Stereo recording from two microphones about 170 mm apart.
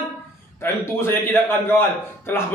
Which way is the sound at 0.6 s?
15° left (ahead or behind).